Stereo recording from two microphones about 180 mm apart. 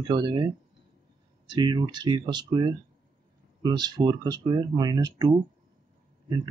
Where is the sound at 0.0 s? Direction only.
25° right (ahead or behind).